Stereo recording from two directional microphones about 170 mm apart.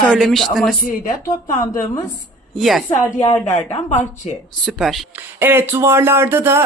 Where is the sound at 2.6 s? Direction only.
Centre (ahead or behind).